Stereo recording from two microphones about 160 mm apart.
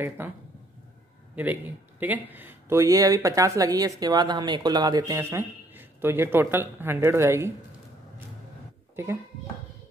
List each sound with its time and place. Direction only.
0.2 s speech: 10° right (ahead or behind)
8.9 s speech: 15° right (ahead or behind)